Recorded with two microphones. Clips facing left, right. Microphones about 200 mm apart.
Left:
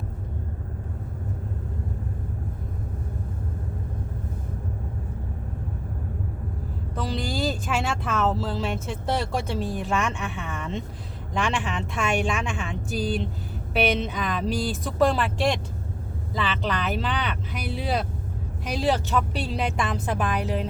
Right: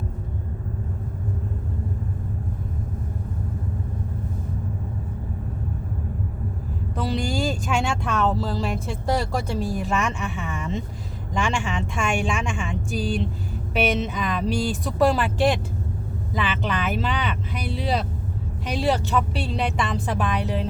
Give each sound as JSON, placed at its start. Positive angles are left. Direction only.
{"t": 6.9, "sound": "speech", "side_deg": 0}
{"t": 9.6, "sound": "speech", "side_deg": 35}
{"t": 9.9, "sound": "speech", "side_deg": 0}
{"t": 13.7, "sound": "speech", "side_deg": 0}